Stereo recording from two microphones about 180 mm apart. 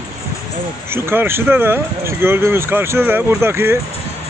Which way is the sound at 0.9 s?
15° right (ahead or behind).